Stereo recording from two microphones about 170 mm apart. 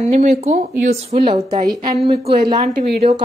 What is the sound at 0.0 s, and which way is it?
A woman's voice, 40° right (ahead or behind).